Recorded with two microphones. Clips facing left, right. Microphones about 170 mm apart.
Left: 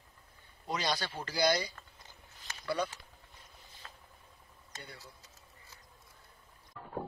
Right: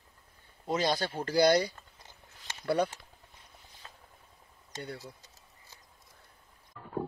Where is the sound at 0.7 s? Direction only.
50° right (ahead or behind).